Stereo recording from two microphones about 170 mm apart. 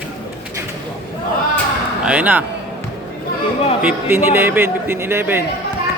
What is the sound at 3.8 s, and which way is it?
A man's voice, 10° right (ahead or behind).